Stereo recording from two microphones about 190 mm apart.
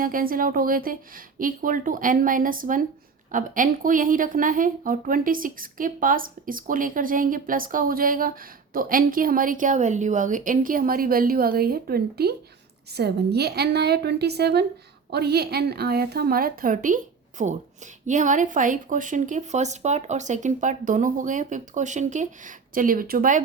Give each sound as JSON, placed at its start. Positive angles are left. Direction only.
{"t": 0.0, "sound": "a woman's voice", "side_deg": -50}